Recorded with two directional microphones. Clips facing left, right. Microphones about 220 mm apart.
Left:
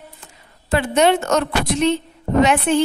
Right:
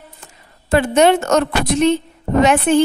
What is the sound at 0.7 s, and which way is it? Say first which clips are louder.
A woman's voice: right 3 dB; 45° right (ahead or behind).